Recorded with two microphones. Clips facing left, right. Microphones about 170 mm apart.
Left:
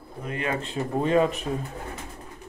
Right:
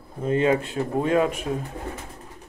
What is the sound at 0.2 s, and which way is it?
Speech, 30° right (ahead or behind).